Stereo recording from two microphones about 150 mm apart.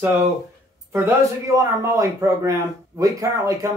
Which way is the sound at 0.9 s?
20° right (ahead or behind).